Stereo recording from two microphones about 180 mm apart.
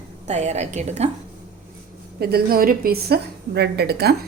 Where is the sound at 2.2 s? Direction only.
60° right (ahead or behind).